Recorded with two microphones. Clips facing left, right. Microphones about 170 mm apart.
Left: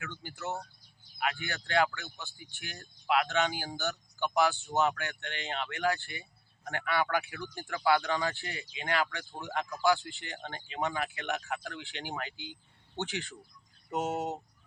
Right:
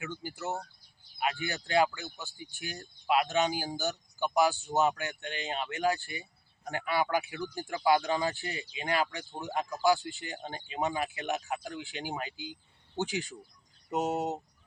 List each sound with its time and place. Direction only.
0.0 s speech: 15° right (ahead or behind)